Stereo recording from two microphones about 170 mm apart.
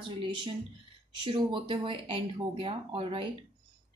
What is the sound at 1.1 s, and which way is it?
A woman's voice, 30° right (ahead or behind).